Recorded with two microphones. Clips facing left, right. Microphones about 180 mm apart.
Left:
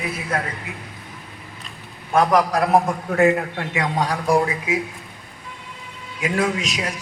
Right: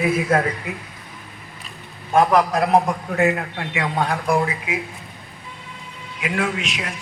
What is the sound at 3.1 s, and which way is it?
A man's voice, 40° left (ahead or behind).